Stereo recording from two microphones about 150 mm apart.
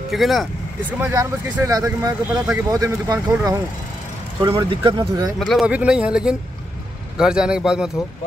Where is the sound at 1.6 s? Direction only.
20° right (ahead or behind).